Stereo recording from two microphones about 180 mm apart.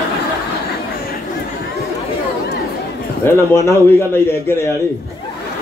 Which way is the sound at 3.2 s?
15° left (ahead or behind).